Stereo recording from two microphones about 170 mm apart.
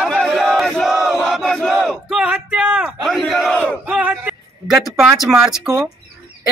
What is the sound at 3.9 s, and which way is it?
Speech, 10° right (ahead or behind).